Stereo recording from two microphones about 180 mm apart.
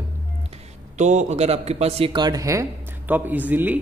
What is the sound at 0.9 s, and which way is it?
A man's voice, 40° right (ahead or behind).